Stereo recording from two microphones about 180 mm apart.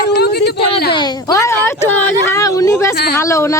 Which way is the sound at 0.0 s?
65° left (ahead or behind).